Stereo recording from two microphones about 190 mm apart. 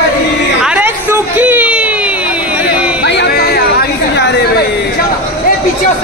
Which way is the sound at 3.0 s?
65° left (ahead or behind).